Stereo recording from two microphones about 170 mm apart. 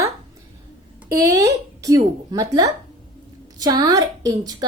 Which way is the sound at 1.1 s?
20° right (ahead or behind).